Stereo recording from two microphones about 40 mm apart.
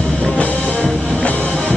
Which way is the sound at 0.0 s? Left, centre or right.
Left.